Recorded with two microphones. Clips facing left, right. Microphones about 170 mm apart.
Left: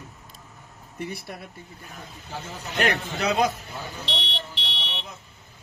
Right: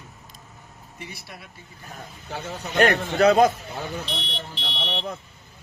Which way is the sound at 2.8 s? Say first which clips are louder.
Right 7 dB; 45° right (ahead or behind).